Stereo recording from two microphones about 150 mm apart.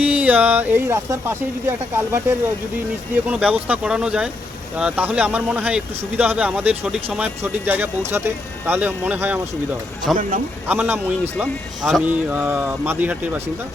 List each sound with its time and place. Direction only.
0.0 s speech: 10° right (ahead or behind)
10.1 s speech: centre (ahead or behind)
10.7 s speech: 15° right (ahead or behind)